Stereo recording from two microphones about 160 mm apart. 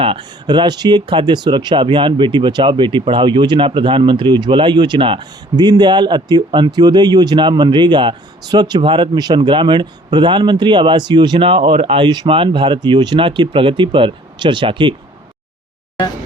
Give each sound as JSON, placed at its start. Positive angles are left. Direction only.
{"t": 0.0, "sound": "speech", "side_deg": -30}